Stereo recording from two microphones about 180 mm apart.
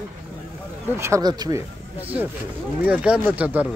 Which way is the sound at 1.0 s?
20° right (ahead or behind).